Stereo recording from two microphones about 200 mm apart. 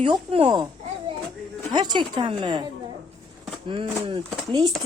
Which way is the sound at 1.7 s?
20° right (ahead or behind).